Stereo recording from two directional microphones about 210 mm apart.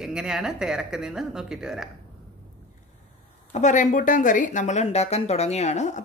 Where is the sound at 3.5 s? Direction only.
35° left (ahead or behind).